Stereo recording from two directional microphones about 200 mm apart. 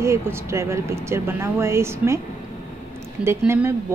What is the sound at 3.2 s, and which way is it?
Speech, 10° right (ahead or behind).